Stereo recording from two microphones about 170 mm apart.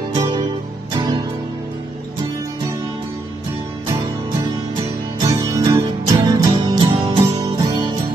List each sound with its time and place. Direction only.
0.9 s music: 25° right (ahead or behind)
5.2 s music: 25° right (ahead or behind)